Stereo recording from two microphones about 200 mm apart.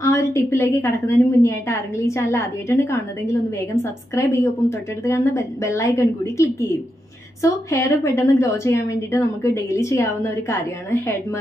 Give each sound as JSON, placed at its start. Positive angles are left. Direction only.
{"t": 0.0, "sound": "a woman's voice", "side_deg": 15}